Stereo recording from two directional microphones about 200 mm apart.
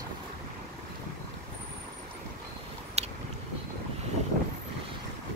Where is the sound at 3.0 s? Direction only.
30° right (ahead or behind).